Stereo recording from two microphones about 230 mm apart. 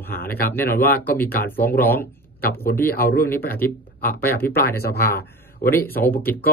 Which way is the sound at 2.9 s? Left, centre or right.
Left.